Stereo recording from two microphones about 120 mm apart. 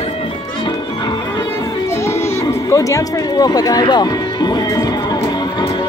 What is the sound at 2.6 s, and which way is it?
Speech, 25° left (ahead or behind).